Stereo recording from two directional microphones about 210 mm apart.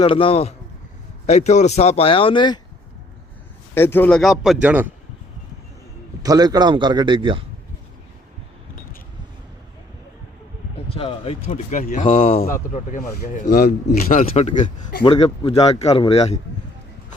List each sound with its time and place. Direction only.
0.0 s speech: 25° left (ahead or behind)
3.8 s speech: 10° left (ahead or behind); by 4.9 s 5° right (ahead or behind)
6.2 s speech: 20° right (ahead or behind)
10.8 s speech: 25° left (ahead or behind)